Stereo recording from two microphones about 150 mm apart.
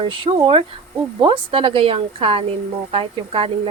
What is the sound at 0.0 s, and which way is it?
Speech, 35° right (ahead or behind).